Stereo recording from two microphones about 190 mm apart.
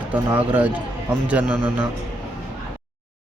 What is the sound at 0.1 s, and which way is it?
Speech, 10° right (ahead or behind).